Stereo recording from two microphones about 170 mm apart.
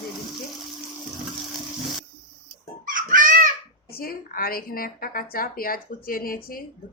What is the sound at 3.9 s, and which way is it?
Speech, 60° left (ahead or behind).